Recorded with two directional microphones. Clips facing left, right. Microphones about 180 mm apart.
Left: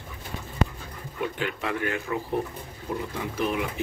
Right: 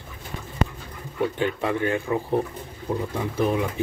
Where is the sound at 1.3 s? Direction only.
25° right (ahead or behind).